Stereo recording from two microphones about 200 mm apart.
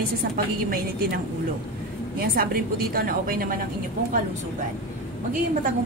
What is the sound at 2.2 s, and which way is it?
A woman's voice, 50° right (ahead or behind).